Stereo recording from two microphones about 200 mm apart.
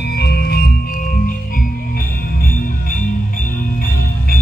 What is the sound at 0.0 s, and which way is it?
Music, 55° left (ahead or behind).